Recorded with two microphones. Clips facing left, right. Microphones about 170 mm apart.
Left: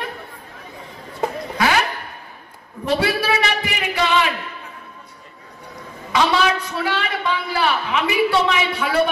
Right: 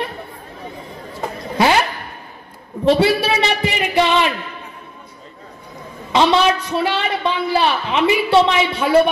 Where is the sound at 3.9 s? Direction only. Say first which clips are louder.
Right 3 dB; 25° right (ahead or behind).